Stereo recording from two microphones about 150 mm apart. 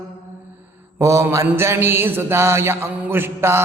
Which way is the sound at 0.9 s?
20° right (ahead or behind).